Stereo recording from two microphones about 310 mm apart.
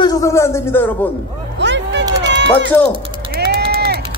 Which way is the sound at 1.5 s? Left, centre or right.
Right.